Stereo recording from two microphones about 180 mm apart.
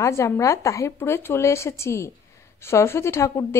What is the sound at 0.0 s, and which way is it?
A woman's voice, 15° left (ahead or behind).